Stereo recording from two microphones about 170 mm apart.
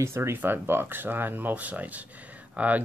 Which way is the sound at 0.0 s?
15° right (ahead or behind).